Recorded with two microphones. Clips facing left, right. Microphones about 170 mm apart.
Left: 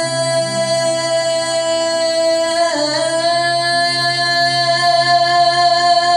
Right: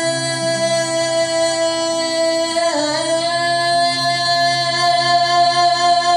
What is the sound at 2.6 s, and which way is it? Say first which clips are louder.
Music: left 1 dB; 20° right (ahead or behind).